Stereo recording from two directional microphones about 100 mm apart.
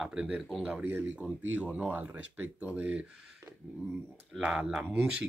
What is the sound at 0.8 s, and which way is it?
Speech, 20° right (ahead or behind).